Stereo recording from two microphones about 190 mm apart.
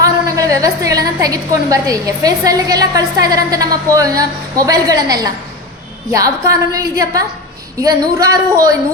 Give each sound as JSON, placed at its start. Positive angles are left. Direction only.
{"t": 0.0, "sound": "a woman's voice", "side_deg": -15}